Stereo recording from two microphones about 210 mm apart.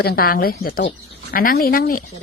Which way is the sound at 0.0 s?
45° left (ahead or behind).